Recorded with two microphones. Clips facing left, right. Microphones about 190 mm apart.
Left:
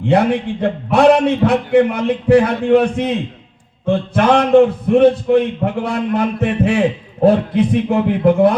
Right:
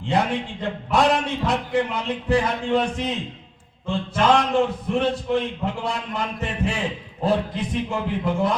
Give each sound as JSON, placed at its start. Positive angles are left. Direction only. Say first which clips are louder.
{"t": 0.0, "sound": "a man's voice", "louder": "left 8 dB", "side_deg": 60}